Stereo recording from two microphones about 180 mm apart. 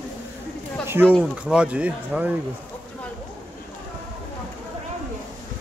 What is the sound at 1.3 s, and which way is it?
Speech, 5° right (ahead or behind).